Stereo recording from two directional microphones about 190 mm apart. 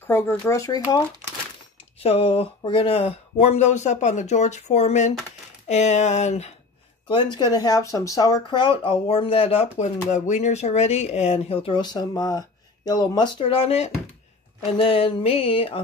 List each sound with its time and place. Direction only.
0.0 s speech: 10° left (ahead or behind)
2.0 s speech: 30° left (ahead or behind)
7.1 s speech: 25° left (ahead or behind)